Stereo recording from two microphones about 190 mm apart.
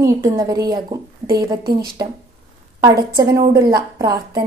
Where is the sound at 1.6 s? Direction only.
55° right (ahead or behind).